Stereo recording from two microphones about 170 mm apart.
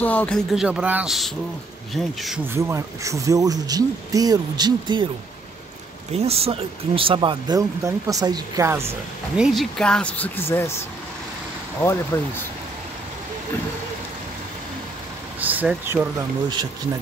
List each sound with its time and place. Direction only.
0.0 s speech: 10° left (ahead or behind)
2.4 s speech: 15° right (ahead or behind)
6.1 s speech: 35° right (ahead or behind); by 8.9 s 15° right (ahead or behind)
9.4 s speech: centre (ahead or behind)
12.1 s speech: 25° left (ahead or behind)
15.4 s speech: 10° right (ahead or behind)